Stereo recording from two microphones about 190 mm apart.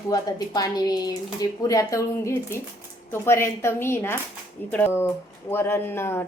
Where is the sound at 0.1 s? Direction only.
20° left (ahead or behind).